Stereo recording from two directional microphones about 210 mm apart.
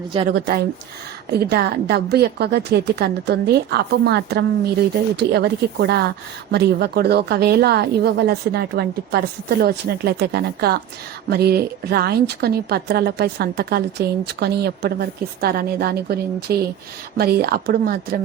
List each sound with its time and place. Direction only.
0.3 s a woman's voice: 45° right (ahead or behind)